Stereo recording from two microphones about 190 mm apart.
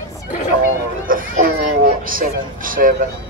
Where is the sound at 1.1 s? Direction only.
45° right (ahead or behind).